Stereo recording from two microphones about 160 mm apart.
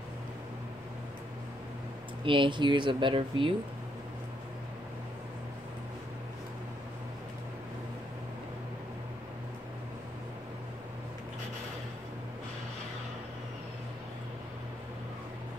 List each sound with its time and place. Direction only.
2.2 s speech: 30° right (ahead or behind)